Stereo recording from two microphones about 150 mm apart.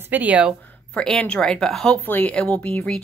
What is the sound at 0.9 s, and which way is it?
A woman's voice, 5° left (ahead or behind).